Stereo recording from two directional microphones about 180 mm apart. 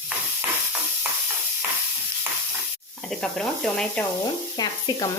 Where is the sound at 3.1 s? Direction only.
5° left (ahead or behind).